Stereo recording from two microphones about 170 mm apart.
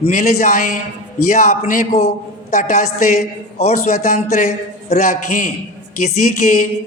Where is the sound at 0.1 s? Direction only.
50° left (ahead or behind).